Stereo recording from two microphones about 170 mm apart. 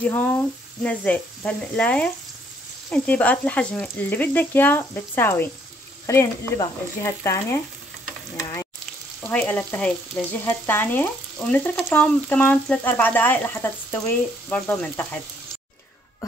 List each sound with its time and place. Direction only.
0.0 s frying: 10° left (ahead or behind)